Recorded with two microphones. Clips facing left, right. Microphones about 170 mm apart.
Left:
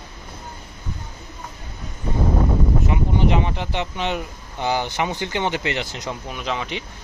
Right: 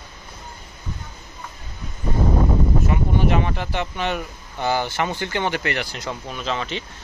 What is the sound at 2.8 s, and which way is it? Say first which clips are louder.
Speech: even; 20° left (ahead or behind).